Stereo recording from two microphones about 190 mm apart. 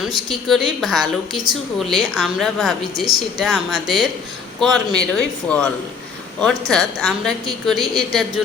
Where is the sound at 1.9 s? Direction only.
Centre (ahead or behind).